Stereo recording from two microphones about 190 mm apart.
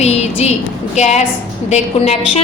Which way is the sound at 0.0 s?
35° left (ahead or behind).